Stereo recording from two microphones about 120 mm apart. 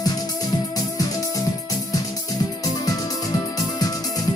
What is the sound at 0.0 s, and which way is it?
Music, 30° left (ahead or behind).